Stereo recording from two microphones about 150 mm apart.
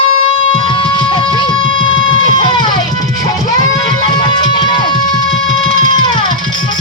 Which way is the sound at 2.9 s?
65° right (ahead or behind).